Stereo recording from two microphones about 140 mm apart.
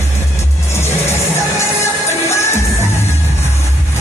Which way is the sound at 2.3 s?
20° left (ahead or behind).